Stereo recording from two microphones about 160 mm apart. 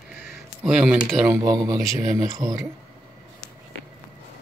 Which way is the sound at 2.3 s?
20° right (ahead or behind).